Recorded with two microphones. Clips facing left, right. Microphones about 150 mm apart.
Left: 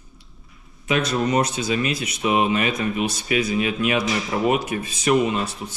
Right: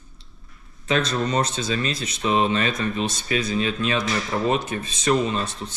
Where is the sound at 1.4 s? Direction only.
15° left (ahead or behind).